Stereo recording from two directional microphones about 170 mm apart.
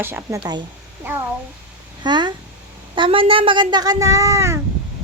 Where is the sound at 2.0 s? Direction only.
25° right (ahead or behind).